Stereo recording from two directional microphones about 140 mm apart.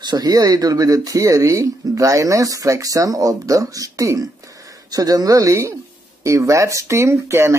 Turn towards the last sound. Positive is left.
turn(degrees=-20)  # may be behind; listen again after turning